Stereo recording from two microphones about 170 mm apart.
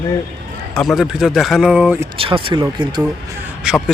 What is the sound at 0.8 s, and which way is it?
Speech, centre (ahead or behind).